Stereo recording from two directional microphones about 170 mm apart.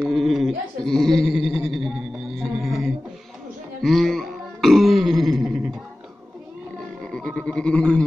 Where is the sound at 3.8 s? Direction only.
Centre (ahead or behind).